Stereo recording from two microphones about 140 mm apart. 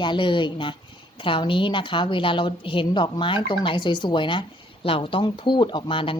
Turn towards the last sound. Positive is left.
turn(degrees=40)  # may be behind; listen again after turning